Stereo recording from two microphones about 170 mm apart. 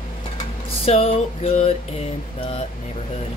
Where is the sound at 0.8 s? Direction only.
35° left (ahead or behind).